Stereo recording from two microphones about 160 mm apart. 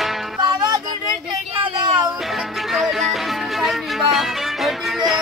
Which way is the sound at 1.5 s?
35° right (ahead or behind).